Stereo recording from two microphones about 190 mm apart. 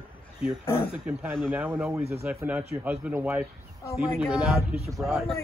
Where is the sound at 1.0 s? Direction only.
10° right (ahead or behind).